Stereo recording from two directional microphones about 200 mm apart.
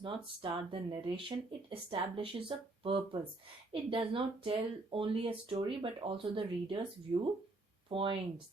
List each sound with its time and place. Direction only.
0.0 s speech: 25° right (ahead or behind)